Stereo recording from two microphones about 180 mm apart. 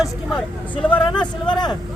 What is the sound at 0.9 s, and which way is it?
Speech, 25° left (ahead or behind).